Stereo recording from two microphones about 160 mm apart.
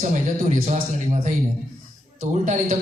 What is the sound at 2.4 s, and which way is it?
Speech, 50° right (ahead or behind).